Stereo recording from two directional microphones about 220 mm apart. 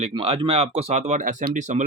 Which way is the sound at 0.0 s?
25° right (ahead or behind).